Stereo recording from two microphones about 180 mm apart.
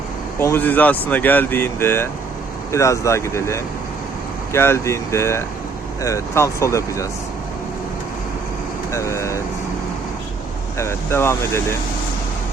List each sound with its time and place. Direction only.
0.3 s speech: 10° left (ahead or behind)
8.9 s speech: 15° left (ahead or behind)
10.8 s speech: 15° left (ahead or behind)